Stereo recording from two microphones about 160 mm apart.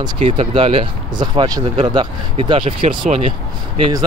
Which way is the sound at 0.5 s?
35° right (ahead or behind).